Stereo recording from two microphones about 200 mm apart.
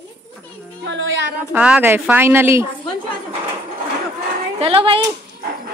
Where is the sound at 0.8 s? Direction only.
65° right (ahead or behind).